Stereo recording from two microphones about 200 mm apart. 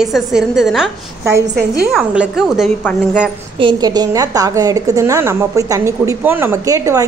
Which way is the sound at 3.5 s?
20° right (ahead or behind).